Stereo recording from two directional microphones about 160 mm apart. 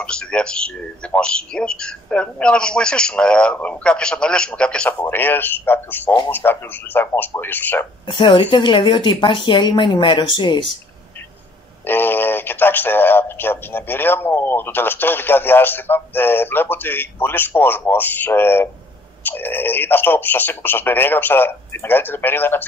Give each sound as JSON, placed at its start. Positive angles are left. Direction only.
{"t": 0.0, "sound": "speech", "side_deg": 5}
{"t": 8.1, "sound": "speech", "side_deg": 30}
{"t": 11.8, "sound": "speech", "side_deg": 15}